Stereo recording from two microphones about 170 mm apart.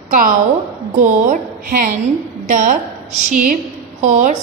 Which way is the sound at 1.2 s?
55° right (ahead or behind).